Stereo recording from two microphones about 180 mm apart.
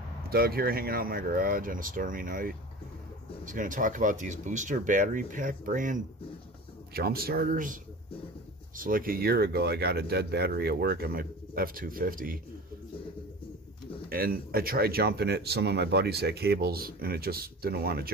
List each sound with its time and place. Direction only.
0.3 s speech: 60° right (ahead or behind)
6.9 s speech: 60° right (ahead or behind)
14.0 s speech: 55° right (ahead or behind)